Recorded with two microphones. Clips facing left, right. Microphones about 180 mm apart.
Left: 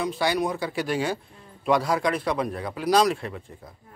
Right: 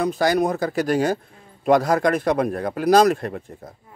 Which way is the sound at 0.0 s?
45° right (ahead or behind).